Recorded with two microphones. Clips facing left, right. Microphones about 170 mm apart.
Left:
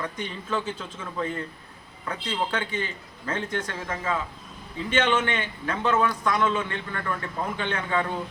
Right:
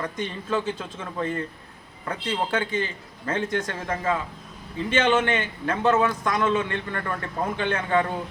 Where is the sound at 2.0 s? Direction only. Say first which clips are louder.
Right 2 dB; 35° right (ahead or behind).